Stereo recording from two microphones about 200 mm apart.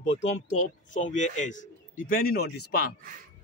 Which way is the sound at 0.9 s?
35° left (ahead or behind).